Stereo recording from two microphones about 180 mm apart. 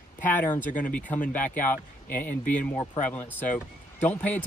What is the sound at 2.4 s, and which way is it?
Speech, 45° left (ahead or behind).